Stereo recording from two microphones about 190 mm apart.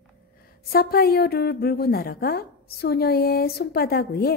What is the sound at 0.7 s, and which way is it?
A woman's voice, 50° left (ahead or behind).